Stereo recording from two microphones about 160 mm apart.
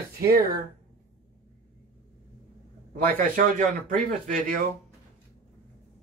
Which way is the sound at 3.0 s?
60° right (ahead or behind).